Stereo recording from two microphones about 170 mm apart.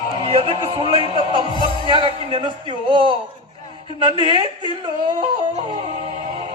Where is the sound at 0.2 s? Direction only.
35° right (ahead or behind).